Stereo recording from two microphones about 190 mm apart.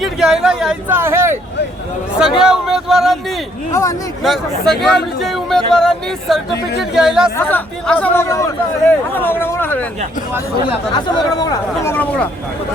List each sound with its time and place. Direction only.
0.0 s a sound: 5° right (ahead or behind)
2.4 s a sound: 5° right (ahead or behind)
3.7 s speech: 15° left (ahead or behind)
4.2 s speech: centre (ahead or behind)
7.3 s speech: 10° left (ahead or behind)
10.9 s speech: 25° left (ahead or behind)